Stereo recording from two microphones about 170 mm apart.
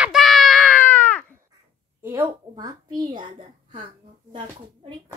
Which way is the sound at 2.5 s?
25° right (ahead or behind).